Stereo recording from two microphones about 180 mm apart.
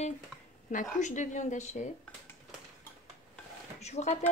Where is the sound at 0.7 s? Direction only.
45° left (ahead or behind).